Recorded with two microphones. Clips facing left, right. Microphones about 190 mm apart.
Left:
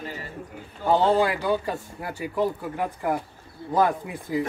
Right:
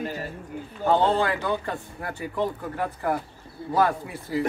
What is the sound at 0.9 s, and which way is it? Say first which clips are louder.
Speech: left 1 dB; 10° left (ahead or behind).